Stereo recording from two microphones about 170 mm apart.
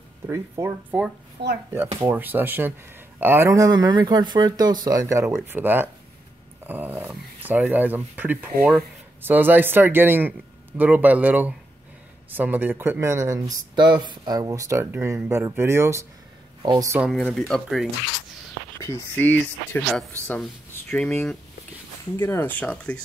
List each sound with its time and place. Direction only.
0.3 s speech: 15° right (ahead or behind)
1.4 s speech: 85° right
2.0 s speech: 15° right (ahead or behind)
16.6 s speech: 25° right (ahead or behind)
17.1 s speech: 5° left (ahead or behind)
18.8 s speech: 15° left (ahead or behind)